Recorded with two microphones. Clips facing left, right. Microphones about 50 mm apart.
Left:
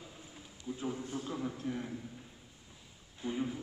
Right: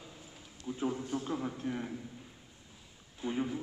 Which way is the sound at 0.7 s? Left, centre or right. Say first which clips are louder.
Right 4 dB; centre.